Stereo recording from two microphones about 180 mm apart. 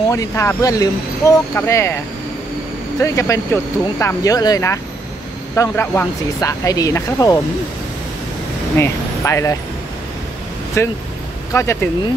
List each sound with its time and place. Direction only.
0.1 s speech: 15° left (ahead or behind)
3.0 s speech: 15° left (ahead or behind)
8.7 s speech: 15° left (ahead or behind)
10.8 s speech: 15° left (ahead or behind)